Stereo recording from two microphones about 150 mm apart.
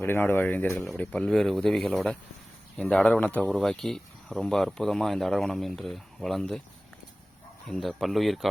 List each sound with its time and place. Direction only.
0.0 s speech: 15° left (ahead or behind)
7.7 s speech: 5° left (ahead or behind)